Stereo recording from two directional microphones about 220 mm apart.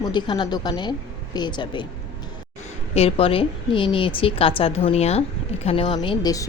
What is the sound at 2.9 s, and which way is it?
A woman's voice, 25° left (ahead or behind).